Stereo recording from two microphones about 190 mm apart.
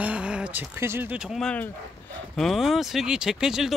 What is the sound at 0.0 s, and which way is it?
Speech, 5° right (ahead or behind).